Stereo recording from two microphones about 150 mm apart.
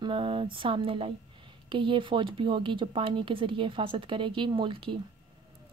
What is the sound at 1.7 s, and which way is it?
Speech, 35° right (ahead or behind).